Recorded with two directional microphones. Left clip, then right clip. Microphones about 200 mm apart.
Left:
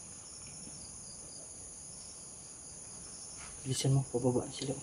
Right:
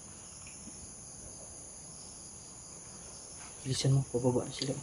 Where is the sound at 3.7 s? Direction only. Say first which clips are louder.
Right 1 dB; 10° left (ahead or behind).